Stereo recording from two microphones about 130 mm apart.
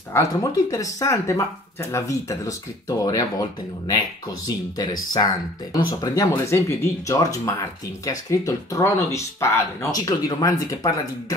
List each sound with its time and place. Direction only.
0.1 s speech: 25° left (ahead or behind)
5.1 s speech: 30° left (ahead or behind)